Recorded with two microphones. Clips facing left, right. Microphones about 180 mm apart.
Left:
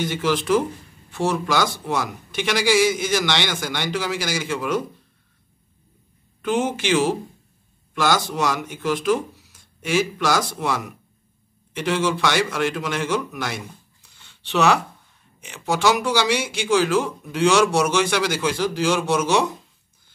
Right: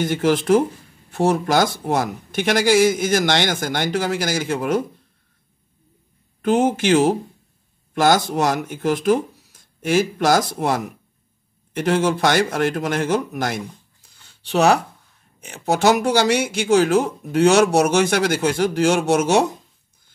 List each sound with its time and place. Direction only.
0.0 s speech: 50° right (ahead or behind)
6.4 s speech: 45° right (ahead or behind)
14.0 s a sound: 40° right (ahead or behind)
15.4 s speech: 40° right (ahead or behind)